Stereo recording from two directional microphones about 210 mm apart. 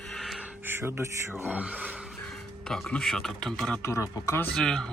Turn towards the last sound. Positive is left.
turn(degrees=0)  # may be behind; listen again after turning